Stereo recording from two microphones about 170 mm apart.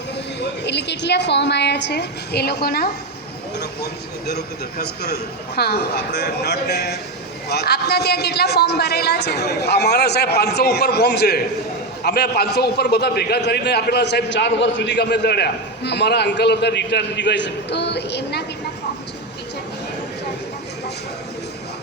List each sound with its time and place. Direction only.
0.3 s a man's voice: 90° left; by 2.9 s 65° left (ahead or behind)
4.3 s a man's voice: 70° left (ahead or behind)